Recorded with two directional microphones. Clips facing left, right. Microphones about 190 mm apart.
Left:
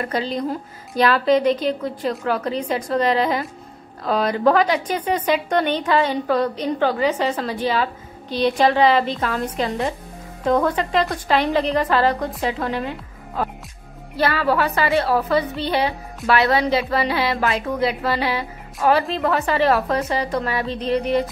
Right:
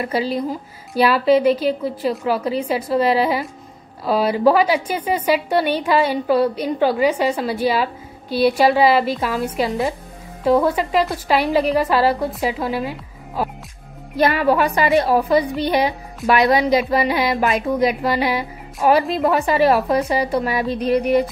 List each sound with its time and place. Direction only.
0.0 s a woman's voice: 5° right (ahead or behind)